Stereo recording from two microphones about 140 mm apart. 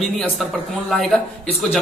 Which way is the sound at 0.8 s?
5° left (ahead or behind).